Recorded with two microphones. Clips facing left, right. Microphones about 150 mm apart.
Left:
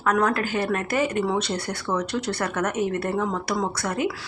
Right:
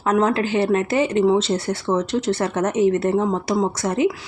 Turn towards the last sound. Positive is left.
turn(degrees=-25)  # may be behind; listen again after turning